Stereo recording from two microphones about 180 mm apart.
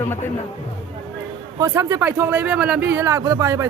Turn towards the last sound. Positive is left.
turn(degrees=-15)  # may be behind; listen again after turning